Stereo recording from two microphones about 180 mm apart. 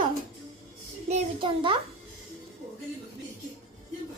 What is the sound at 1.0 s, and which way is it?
Child singing, 35° right (ahead or behind).